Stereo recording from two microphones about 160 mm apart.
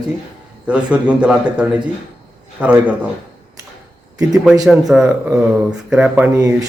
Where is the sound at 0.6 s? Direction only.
10° right (ahead or behind).